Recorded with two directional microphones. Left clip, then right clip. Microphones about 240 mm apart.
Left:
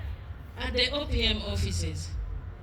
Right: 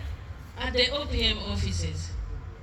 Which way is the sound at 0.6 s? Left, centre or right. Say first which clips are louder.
Right 2 dB; left.